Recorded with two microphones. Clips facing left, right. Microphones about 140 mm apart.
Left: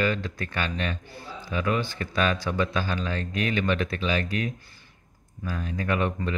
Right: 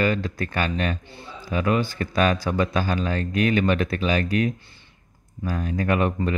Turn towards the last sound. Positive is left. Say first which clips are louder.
# right 4 dB
turn(degrees=-45)  # may be behind; listen again after turning